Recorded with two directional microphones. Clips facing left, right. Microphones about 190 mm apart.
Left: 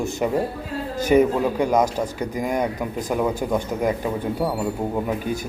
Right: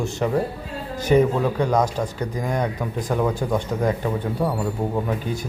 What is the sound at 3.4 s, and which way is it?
Mantra, 5° left (ahead or behind).